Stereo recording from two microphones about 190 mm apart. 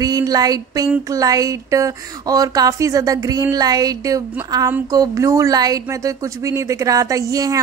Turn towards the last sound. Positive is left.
turn(degrees=-15)  # may be behind; listen again after turning